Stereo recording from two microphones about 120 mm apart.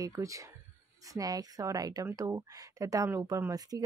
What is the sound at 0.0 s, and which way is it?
Speech, 25° right (ahead or behind).